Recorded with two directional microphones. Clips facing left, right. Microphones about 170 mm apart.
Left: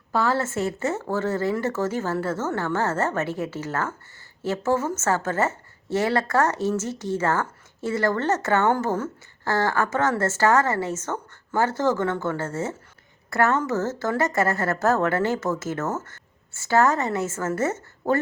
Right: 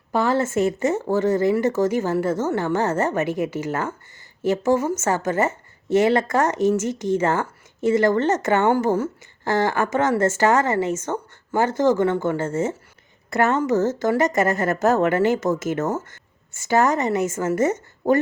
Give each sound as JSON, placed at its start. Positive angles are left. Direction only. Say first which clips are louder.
{"t": 0.1, "sound": "a woman's voice", "louder": "right 3 dB", "side_deg": -15}